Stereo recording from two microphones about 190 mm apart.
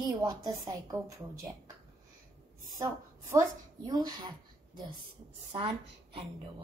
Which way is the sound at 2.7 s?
15° right (ahead or behind).